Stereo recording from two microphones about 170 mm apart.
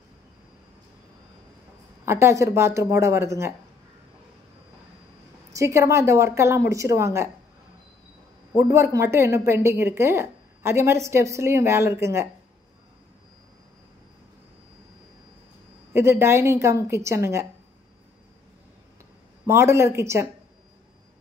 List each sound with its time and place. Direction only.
2.0 s speech: 15° right (ahead or behind)
5.5 s speech: 15° right (ahead or behind)
8.7 s speech: 15° right (ahead or behind)
15.9 s speech: 15° right (ahead or behind)
19.4 s speech: 15° right (ahead or behind)